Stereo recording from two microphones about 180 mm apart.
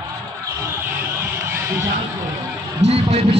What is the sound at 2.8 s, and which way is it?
Music, 35° right (ahead or behind).